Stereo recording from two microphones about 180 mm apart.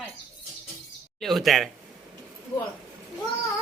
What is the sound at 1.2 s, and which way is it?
Speech, centre (ahead or behind).